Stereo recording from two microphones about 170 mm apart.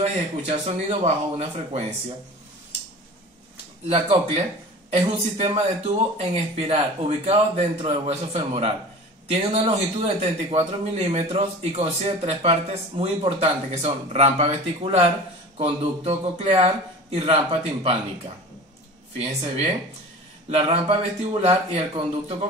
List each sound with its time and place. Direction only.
0.0 s speech: 35° right (ahead or behind)
3.8 s speech: 35° right (ahead or behind)